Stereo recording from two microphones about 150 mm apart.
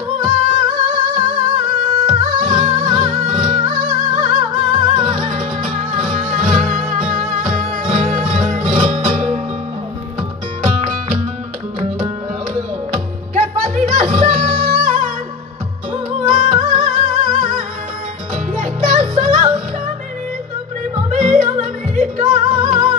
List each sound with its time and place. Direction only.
0.2 s music: 50° right (ahead or behind)
12.9 s music: 55° right (ahead or behind)
16.1 s music: 50° right (ahead or behind)
21.1 s music: 55° right (ahead or behind)